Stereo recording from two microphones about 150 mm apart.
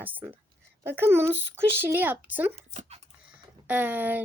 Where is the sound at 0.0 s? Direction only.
10° right (ahead or behind).